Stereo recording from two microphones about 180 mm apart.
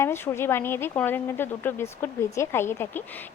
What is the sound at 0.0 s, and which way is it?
Speech, 15° left (ahead or behind).